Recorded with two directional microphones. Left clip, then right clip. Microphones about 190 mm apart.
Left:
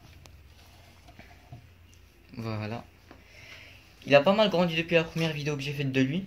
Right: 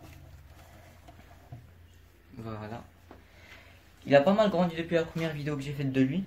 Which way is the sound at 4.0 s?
20° left (ahead or behind).